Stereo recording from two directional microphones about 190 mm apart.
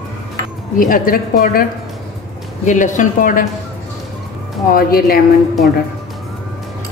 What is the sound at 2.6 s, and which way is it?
Speech, 40° left (ahead or behind).